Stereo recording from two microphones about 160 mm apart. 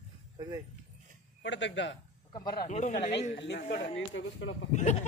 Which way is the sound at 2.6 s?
45° left (ahead or behind).